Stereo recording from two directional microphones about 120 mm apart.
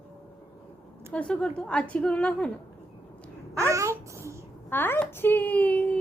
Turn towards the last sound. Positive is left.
turn(degrees=10)  # may be behind; listen again after turning